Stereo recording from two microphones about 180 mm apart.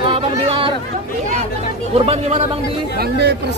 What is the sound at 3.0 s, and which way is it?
Speech, 65° right (ahead or behind).